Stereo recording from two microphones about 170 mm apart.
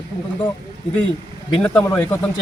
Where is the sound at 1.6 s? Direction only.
10° left (ahead or behind).